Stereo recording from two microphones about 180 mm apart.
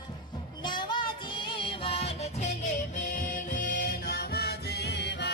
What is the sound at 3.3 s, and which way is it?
Music, 45° left (ahead or behind).